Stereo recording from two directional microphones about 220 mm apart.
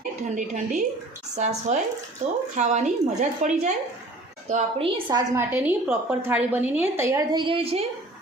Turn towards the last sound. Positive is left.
turn(degrees=-25)  # may be behind; listen again after turning